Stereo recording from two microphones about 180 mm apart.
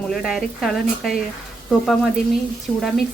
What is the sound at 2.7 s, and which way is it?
Speech, 5° left (ahead or behind).